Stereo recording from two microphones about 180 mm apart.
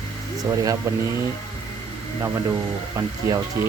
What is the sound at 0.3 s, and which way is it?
Speech, 20° right (ahead or behind).